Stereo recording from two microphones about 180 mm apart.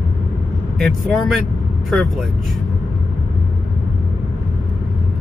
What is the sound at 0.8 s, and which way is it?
Speech, centre (ahead or behind).